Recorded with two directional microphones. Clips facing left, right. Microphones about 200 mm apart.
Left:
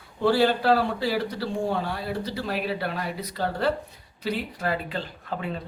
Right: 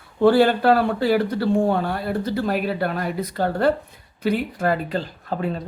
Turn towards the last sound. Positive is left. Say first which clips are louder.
# right 6 dB
turn(degrees=-40)  # may be behind; listen again after turning